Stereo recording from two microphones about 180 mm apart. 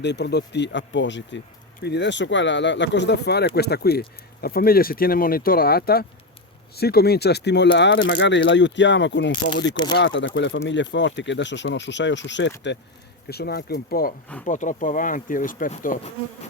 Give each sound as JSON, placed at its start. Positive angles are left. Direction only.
{"t": 0.0, "sound": "speech", "side_deg": 70}
{"t": 1.8, "sound": "speech", "side_deg": 70}
{"t": 13.3, "sound": "speech", "side_deg": 65}